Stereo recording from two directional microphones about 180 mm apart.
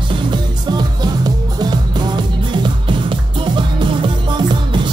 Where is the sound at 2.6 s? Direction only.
25° right (ahead or behind).